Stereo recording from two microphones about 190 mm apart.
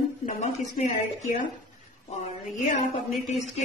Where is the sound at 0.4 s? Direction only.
40° left (ahead or behind).